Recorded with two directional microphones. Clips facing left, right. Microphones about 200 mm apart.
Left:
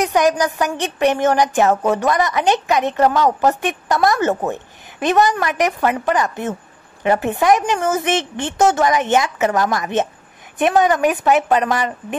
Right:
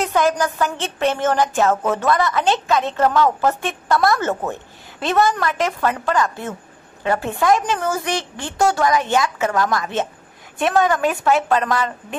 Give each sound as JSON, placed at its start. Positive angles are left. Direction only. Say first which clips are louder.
{"t": 0.0, "sound": "a woman's voice", "louder": "left 2 dB", "side_deg": 15}